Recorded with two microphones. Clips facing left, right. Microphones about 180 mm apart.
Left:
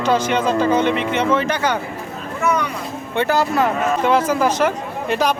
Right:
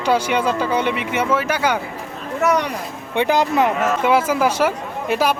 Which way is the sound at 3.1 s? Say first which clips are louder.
Right 1 dB; 15° right (ahead or behind).